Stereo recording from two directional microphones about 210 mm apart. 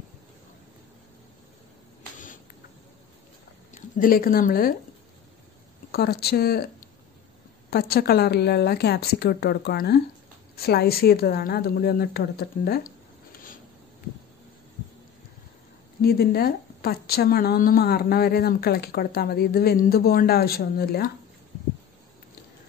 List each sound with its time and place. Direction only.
3.7 s speech: 40° left (ahead or behind)
5.9 s a woman's voice: 50° left (ahead or behind)
7.7 s a woman's voice: 50° left (ahead or behind)
13.3 s a sound: 40° left (ahead or behind)
16.0 s a woman's voice: 45° left (ahead or behind)